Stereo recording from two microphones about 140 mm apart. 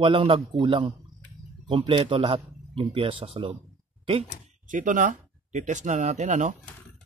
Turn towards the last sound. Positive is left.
turn(degrees=-60)  # may be behind; listen again after turning